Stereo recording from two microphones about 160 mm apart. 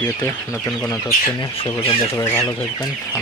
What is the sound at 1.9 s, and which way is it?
Chicken, 20° left (ahead or behind).